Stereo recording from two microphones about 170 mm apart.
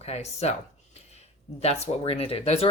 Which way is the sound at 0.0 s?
40° left (ahead or behind).